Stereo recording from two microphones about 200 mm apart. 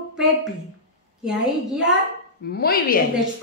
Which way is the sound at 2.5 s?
50° left (ahead or behind).